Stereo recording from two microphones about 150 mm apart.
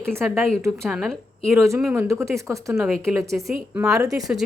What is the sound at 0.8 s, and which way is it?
Speech, centre (ahead or behind).